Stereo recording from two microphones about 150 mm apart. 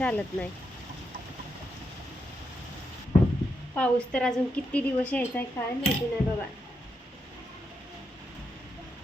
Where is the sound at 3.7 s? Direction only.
10° left (ahead or behind).